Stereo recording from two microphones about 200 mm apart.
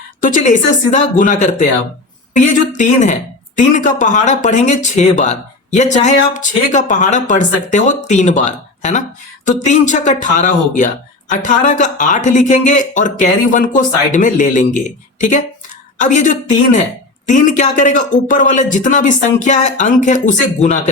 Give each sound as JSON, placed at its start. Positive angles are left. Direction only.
{"t": 0.2, "sound": "speech", "side_deg": 40}